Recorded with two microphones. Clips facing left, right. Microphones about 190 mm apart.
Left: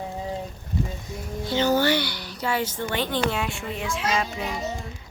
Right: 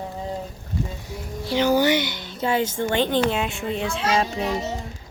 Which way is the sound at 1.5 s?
10° right (ahead or behind).